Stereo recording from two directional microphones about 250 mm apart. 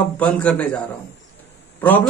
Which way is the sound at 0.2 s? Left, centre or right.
Centre.